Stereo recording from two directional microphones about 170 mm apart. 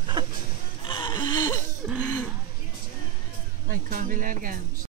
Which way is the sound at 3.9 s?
55° right (ahead or behind).